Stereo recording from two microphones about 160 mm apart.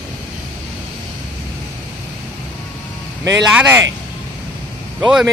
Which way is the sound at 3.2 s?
10° right (ahead or behind).